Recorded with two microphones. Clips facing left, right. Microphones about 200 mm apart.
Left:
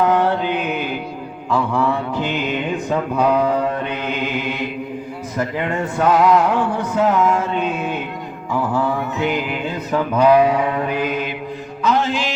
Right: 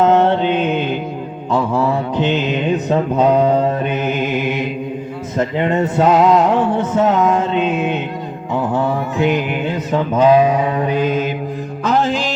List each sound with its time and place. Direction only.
0.0 s mantra: 25° right (ahead or behind)
8.5 s a sound: 20° right (ahead or behind)
9.2 s mantra: 20° right (ahead or behind)
11.1 s mantra: 45° right (ahead or behind)